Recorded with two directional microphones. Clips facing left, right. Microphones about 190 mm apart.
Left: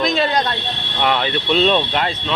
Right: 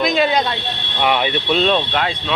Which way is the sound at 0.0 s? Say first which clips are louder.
Right 2 dB; 5° right (ahead or behind).